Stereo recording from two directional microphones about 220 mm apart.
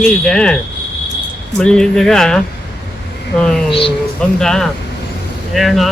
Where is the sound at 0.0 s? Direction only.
5° left (ahead or behind).